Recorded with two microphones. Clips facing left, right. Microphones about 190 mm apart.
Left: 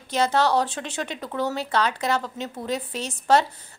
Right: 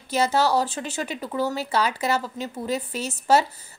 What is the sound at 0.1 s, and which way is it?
A woman's voice, 5° right (ahead or behind).